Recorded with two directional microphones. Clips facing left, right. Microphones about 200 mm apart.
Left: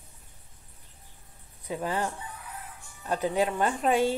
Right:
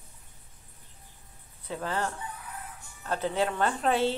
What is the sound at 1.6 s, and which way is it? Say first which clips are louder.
A woman's voice: left 2 dB; 15° left (ahead or behind).